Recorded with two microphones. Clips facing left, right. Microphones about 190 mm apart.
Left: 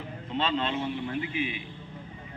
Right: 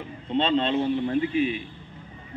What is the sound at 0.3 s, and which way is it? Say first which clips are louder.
A man's voice: right 6 dB; 30° right (ahead or behind).